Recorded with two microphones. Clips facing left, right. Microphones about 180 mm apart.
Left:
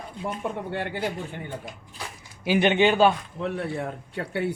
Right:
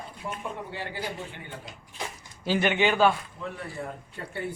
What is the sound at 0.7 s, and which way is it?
A man's voice, 60° left (ahead or behind).